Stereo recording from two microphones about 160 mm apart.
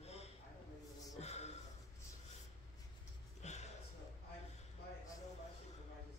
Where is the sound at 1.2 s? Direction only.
45° left (ahead or behind).